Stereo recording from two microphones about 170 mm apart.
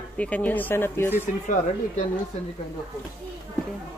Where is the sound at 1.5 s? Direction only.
50° left (ahead or behind).